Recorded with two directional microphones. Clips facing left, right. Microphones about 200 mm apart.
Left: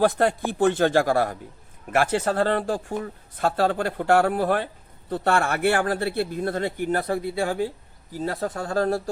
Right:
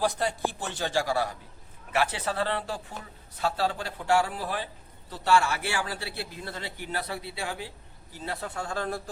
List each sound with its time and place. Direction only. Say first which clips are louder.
0.0 s speech: left 7 dB; 60° left (ahead or behind); by 9.0 s 40° left (ahead or behind)